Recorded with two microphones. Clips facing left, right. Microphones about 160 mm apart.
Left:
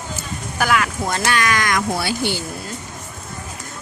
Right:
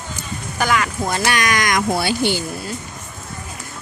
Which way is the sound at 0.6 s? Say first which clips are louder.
Even; 5° left (ahead or behind).